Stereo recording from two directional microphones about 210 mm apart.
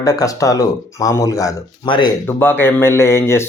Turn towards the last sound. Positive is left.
turn(degrees=10)  # may be behind; listen again after turning